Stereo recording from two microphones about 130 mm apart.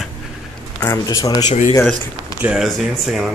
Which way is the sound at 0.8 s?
25° left (ahead or behind).